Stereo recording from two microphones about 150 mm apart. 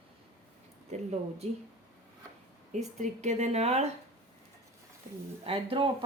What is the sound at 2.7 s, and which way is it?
Speech, 50° right (ahead or behind).